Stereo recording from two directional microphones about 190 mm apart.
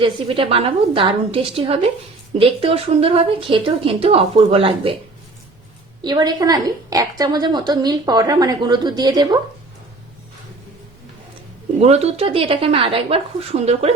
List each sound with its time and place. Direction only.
0.0 s a woman's voice: 30° right (ahead or behind)
6.0 s a woman's voice: 20° right (ahead or behind)
11.8 s a woman's voice: 35° right (ahead or behind)